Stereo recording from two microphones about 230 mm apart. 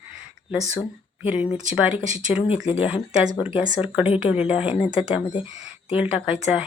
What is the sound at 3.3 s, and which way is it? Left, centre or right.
Speech, centre.